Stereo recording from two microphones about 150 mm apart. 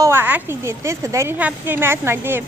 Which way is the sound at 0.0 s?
15° right (ahead or behind).